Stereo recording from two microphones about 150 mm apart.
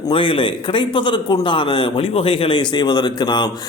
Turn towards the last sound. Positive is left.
turn(degrees=30)  # may be behind; listen again after turning